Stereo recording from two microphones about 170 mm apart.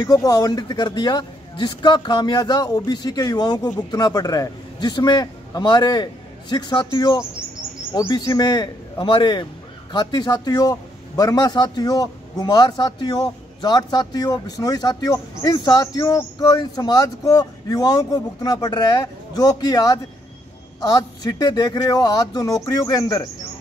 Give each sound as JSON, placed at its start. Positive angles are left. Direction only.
{"t": 0.0, "sound": "a man's voice", "side_deg": 20}